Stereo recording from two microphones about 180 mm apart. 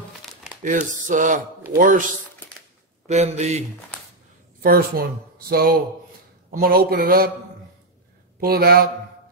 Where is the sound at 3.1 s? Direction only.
40° right (ahead or behind).